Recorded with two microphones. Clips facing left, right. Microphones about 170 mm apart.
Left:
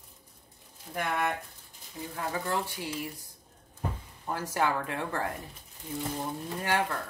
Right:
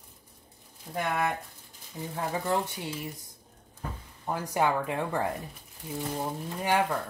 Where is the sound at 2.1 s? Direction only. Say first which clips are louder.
Right 3 dB; 20° right (ahead or behind).